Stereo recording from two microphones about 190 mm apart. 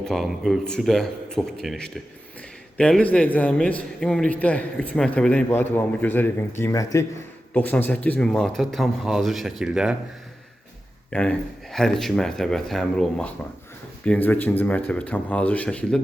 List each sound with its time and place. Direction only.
0.0 s a man's voice: centre (ahead or behind)
11.1 s a man's voice: 5° left (ahead or behind)